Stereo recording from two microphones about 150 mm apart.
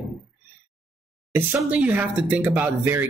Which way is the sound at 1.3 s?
15° right (ahead or behind).